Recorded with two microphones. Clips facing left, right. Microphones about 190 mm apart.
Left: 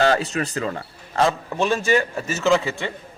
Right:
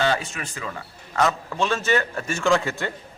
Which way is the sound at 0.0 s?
40° left (ahead or behind).